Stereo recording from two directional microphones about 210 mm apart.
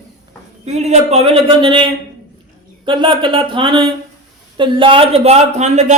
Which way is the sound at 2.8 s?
25° right (ahead or behind).